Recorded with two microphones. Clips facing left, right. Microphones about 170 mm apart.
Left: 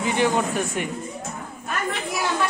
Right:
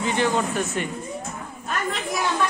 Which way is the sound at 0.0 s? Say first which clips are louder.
Left 1 dB; 15° left (ahead or behind).